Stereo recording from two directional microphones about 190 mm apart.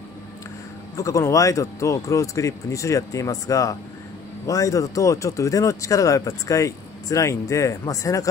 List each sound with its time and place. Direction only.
0.9 s speech: 15° left (ahead or behind)